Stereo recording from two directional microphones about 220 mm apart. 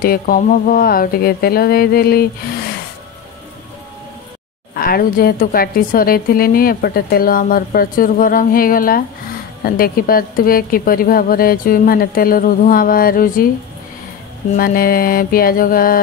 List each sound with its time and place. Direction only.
0.0 s speech: 40° left (ahead or behind)
4.7 s a woman's voice: 40° left (ahead or behind)
14.6 s a woman's voice: 40° left (ahead or behind)